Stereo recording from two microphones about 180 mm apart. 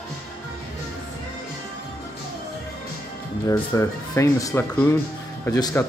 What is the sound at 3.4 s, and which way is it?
Speech, 15° left (ahead or behind).